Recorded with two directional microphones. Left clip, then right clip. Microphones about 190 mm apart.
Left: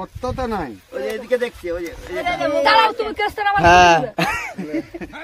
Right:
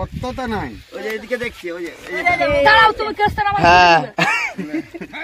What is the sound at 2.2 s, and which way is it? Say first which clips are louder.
Speech: right 4 dB; 40° right (ahead or behind).